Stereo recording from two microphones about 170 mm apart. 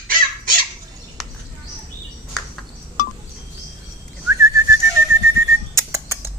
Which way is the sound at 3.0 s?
45° left (ahead or behind).